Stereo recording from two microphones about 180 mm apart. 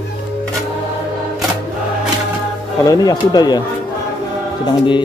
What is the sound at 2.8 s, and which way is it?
Speech, 20° left (ahead or behind).